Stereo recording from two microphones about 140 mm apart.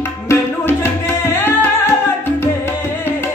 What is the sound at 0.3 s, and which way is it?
Music, 15° left (ahead or behind).